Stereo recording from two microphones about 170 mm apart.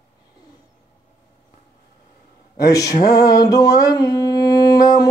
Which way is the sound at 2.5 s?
20° left (ahead or behind).